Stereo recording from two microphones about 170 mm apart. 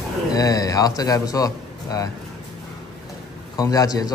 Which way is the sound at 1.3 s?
20° left (ahead or behind).